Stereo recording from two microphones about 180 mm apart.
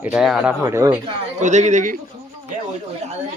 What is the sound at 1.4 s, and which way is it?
Speech, 40° right (ahead or behind).